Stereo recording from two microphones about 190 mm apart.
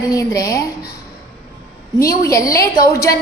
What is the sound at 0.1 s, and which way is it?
Speech, 15° left (ahead or behind).